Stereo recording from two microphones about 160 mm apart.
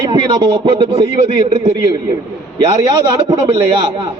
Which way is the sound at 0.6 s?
25° right (ahead or behind).